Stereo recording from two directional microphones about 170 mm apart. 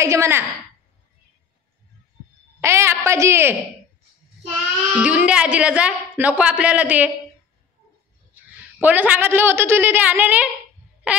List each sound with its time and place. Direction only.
0.0 s a woman's voice: 15° right (ahead or behind)
2.6 s a woman's voice: 15° right (ahead or behind)
4.9 s a woman's voice: 10° right (ahead or behind)
8.8 s a woman's voice: 10° right (ahead or behind)